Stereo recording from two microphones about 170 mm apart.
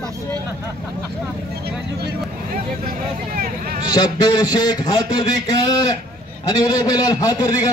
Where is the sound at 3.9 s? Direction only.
25° left (ahead or behind).